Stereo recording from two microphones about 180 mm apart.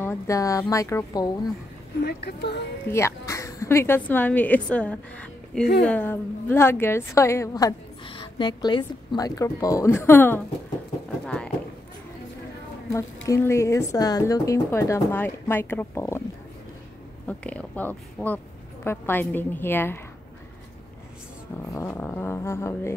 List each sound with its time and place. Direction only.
0.0 s a woman's voice: 15° left (ahead or behind)
2.0 s speech: 65° left (ahead or behind)
2.9 s a woman's voice: 15° left (ahead or behind)
13.3 s a woman's voice: 15° left (ahead or behind)
17.3 s a woman's voice: 5° left (ahead or behind)
21.7 s a woman's voice: 10° left (ahead or behind)